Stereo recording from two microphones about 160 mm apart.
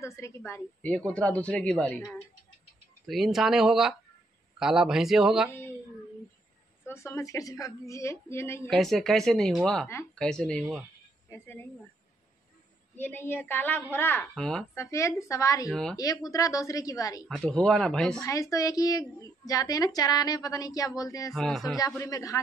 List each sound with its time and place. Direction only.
0.0 s a woman's voice: 15° left (ahead or behind); by 5.5 s centre (ahead or behind)
5.5 s a sound: 15° left (ahead or behind)
6.9 s a woman's voice: 15° left (ahead or behind)
8.6 s speech: centre (ahead or behind)
12.9 s a woman's voice: 10° left (ahead or behind)
14.3 s speech: 5° left (ahead or behind)
14.8 s a woman's voice: 20° left (ahead or behind)
15.7 s speech: 5° left (ahead or behind)
16.0 s a woman's voice: 25° left (ahead or behind)
17.3 s speech: 5° left (ahead or behind)
18.2 s a woman's voice: 20° left (ahead or behind)
21.3 s speech: centre (ahead or behind)
21.7 s a woman's voice: 20° left (ahead or behind)